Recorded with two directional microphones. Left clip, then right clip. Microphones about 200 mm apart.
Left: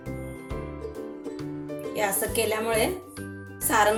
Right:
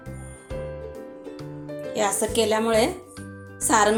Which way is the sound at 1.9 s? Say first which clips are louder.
Right 4 dB; 30° right (ahead or behind).